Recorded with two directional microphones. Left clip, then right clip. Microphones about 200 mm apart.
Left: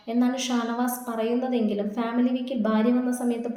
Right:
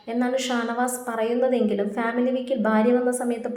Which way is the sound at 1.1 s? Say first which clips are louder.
Right 5 dB; 15° right (ahead or behind).